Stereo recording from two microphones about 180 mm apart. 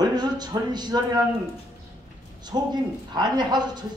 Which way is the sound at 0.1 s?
25° right (ahead or behind).